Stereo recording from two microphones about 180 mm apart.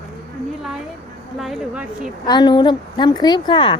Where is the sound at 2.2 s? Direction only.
25° left (ahead or behind).